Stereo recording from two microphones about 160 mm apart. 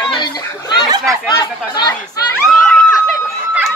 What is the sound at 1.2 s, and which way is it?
Speech, 25° left (ahead or behind).